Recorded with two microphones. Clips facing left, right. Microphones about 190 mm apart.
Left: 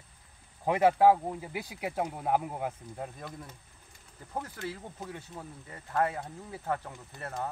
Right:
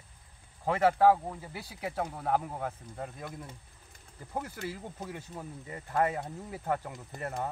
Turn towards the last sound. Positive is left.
turn(degrees=-15)  # may be behind; listen again after turning